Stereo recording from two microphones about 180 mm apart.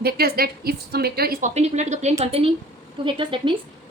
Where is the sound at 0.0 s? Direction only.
60° right (ahead or behind).